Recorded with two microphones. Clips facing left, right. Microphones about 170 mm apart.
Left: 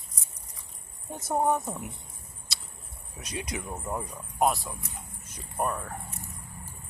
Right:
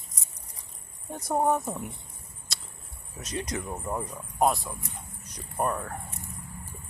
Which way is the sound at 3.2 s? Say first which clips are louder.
Right 3 dB; centre (ahead or behind).